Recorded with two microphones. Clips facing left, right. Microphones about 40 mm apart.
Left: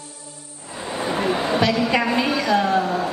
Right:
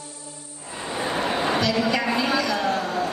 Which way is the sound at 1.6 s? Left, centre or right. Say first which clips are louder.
Left 3 dB; left.